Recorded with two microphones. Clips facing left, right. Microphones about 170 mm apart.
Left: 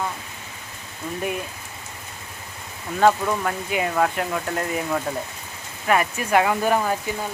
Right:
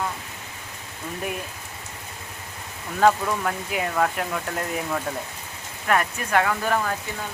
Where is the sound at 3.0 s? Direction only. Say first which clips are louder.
Left 1 dB; centre (ahead or behind).